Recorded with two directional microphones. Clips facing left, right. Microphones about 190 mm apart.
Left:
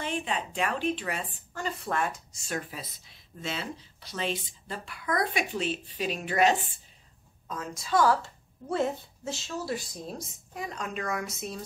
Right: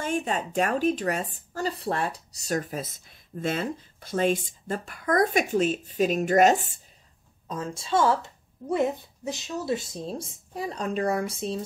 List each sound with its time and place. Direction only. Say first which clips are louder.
0.0 s speech: right 4 dB; 45° right (ahead or behind)
7.4 s a woman's voice: right 4 dB; 30° right (ahead or behind)